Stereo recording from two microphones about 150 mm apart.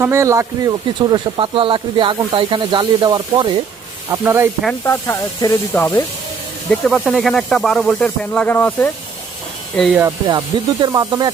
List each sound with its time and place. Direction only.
0.0 s speech: 20° right (ahead or behind)
0.9 s speech: 30° right (ahead or behind)
4.1 s speech: 15° right (ahead or behind)
4.8 s snake: 20° left (ahead or behind)
6.7 s speech: 5° left (ahead or behind)
10.2 s speech: 30° right (ahead or behind)